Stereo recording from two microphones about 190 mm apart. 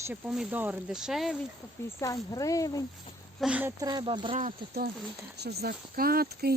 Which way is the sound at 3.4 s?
5° right (ahead or behind).